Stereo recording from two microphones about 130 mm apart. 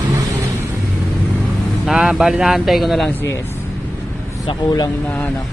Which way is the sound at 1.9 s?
5° right (ahead or behind).